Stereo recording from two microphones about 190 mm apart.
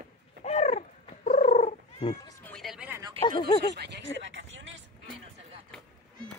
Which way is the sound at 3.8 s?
65° right (ahead or behind).